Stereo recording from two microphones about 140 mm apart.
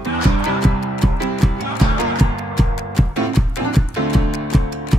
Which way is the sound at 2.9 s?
Centre (ahead or behind).